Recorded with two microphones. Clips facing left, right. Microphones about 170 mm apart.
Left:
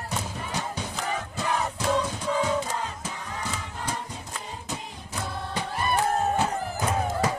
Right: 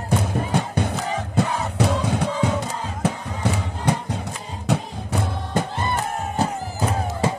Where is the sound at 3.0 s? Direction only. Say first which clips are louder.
Right 10 dB; 70° right (ahead or behind).